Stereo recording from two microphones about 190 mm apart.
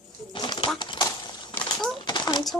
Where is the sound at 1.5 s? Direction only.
Centre (ahead or behind).